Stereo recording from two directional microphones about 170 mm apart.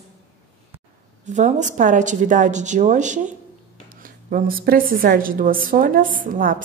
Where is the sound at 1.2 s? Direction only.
45° right (ahead or behind).